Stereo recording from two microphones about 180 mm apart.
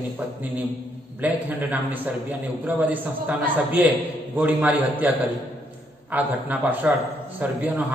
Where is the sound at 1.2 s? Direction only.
10° right (ahead or behind).